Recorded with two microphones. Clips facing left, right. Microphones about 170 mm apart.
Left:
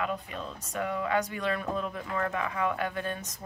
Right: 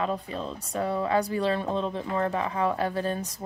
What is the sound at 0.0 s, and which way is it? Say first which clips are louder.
Speech: right 4 dB; 30° right (ahead or behind).